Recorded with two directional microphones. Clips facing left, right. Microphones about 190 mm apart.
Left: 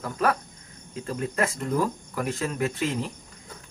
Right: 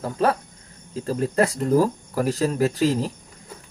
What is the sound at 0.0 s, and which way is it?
Speech, 30° right (ahead or behind).